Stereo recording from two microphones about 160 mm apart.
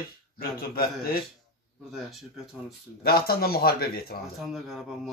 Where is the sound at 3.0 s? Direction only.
70° left (ahead or behind).